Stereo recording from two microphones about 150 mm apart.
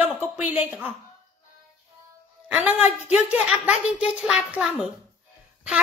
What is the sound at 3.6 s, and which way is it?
Speech, 50° left (ahead or behind).